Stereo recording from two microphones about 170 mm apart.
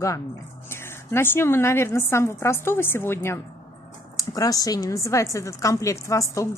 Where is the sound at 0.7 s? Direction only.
15° left (ahead or behind).